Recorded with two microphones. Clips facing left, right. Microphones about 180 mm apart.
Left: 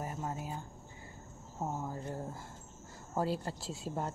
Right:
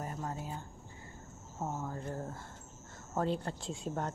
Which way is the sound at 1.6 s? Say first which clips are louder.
Even; 15° left (ahead or behind).